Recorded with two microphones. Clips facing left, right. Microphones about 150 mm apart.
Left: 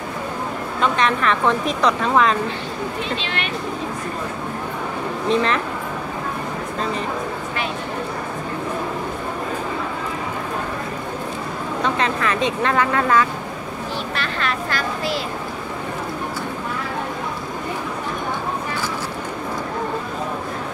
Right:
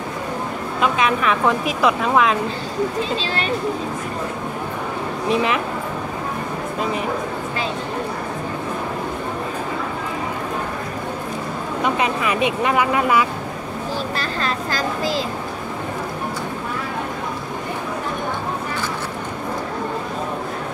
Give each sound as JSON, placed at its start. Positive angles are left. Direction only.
{"t": 0.7, "sound": "speech", "side_deg": -5}
{"t": 5.3, "sound": "speech", "side_deg": -10}
{"t": 11.8, "sound": "speech", "side_deg": -15}
{"t": 14.1, "sound": "speech", "side_deg": -35}